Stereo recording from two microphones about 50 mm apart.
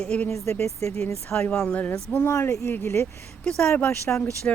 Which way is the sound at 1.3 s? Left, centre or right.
Left.